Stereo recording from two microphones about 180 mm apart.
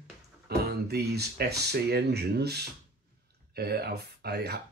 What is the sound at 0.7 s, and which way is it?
Speech, 65° right (ahead or behind).